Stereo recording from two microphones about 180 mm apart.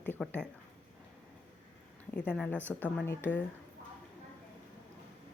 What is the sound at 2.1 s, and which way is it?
Speech, 10° left (ahead or behind).